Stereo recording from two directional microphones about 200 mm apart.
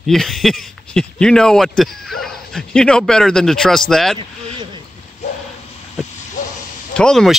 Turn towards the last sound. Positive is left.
turn(degrees=5)  # may be behind; listen again after turning